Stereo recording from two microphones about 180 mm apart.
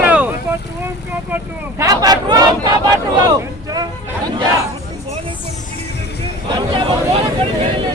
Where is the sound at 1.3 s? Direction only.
15° right (ahead or behind).